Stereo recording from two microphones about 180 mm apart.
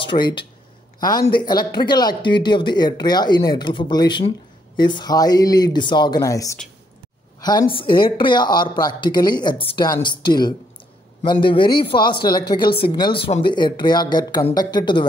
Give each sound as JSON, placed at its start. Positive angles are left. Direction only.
{"t": 0.0, "sound": "speech", "side_deg": 25}